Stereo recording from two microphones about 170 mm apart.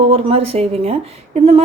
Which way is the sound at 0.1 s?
35° right (ahead or behind).